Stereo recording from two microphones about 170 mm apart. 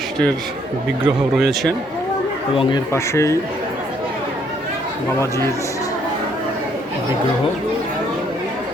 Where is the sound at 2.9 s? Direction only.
15° left (ahead or behind).